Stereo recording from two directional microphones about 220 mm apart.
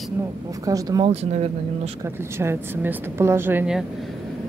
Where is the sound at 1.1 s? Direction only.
30° right (ahead or behind).